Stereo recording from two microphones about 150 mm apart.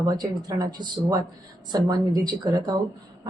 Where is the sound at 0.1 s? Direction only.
25° right (ahead or behind).